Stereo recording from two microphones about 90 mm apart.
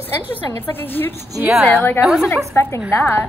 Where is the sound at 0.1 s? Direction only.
25° left (ahead or behind).